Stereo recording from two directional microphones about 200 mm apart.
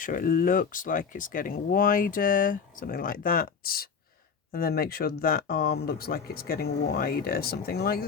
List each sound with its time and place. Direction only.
0.0 s speech: 45° left (ahead or behind)